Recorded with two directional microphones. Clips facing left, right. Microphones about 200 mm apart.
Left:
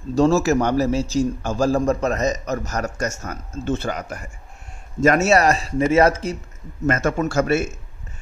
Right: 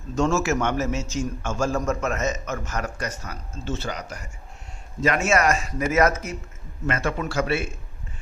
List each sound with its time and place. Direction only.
0.1 s a man's voice: 35° left (ahead or behind); by 4.3 s 50° left (ahead or behind)
5.0 s a man's voice: 40° left (ahead or behind)
6.9 s speech: 45° left (ahead or behind)